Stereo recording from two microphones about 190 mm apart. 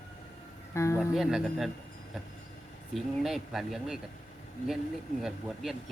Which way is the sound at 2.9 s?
Centre (ahead or behind).